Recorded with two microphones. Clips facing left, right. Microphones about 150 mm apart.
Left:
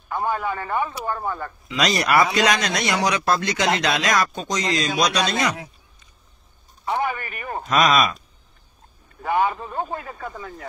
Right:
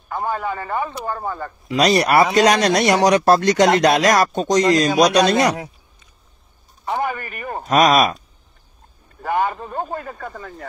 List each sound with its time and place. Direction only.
0.1 s a man's voice: centre (ahead or behind)
1.8 s speech: 40° right (ahead or behind)
6.8 s a sound: centre (ahead or behind)
7.6 s speech: 40° right (ahead or behind)
9.5 s a man's voice: centre (ahead or behind)